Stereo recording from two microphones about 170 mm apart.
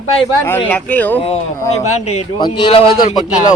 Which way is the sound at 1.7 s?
40° left (ahead or behind).